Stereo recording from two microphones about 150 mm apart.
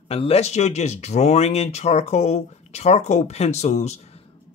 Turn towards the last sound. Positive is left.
turn(degrees=50)  # may be behind; listen again after turning